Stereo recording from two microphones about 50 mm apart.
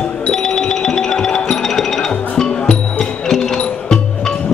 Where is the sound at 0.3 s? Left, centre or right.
Centre.